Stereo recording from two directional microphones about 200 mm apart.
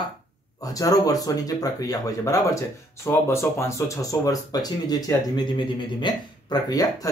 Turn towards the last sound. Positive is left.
turn(degrees=20)  # may be behind; listen again after turning